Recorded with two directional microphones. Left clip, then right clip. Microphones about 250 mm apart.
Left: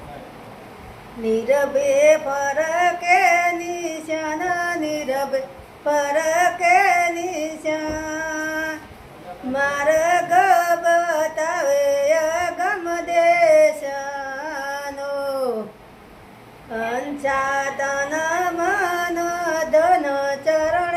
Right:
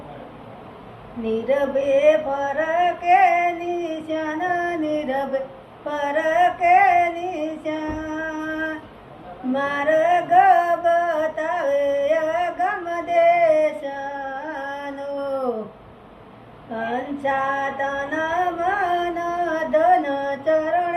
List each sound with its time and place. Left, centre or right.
1.2 s male singing: centre
5.8 s female singing: centre
9.6 s music: left
16.9 s music: left
19.5 s a sound: left